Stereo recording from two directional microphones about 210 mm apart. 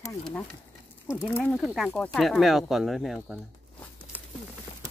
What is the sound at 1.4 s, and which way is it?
Speech, centre (ahead or behind).